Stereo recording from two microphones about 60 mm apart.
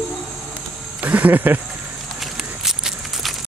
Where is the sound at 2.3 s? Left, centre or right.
Centre.